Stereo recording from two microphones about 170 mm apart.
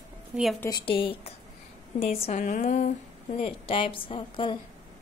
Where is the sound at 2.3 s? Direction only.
50° left (ahead or behind).